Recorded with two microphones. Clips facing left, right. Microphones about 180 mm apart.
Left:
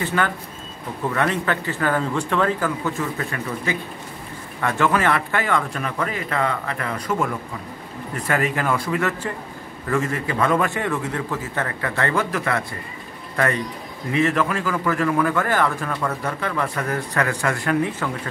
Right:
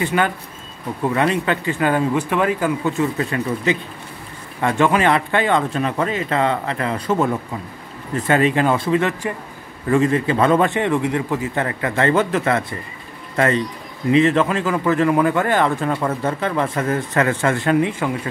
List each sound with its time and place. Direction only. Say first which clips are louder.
0.0 s speech: right 3 dB; 20° right (ahead or behind)
14.1 s speech: right 5 dB; 25° right (ahead or behind)
17.9 s speech: right 4 dB; 10° right (ahead or behind)